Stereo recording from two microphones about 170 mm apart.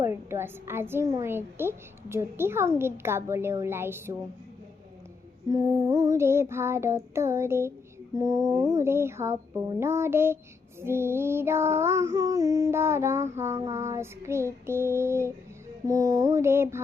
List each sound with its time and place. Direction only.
0.0 s a woman's voice: 15° right (ahead or behind)
5.5 s a woman's voice: 25° right (ahead or behind)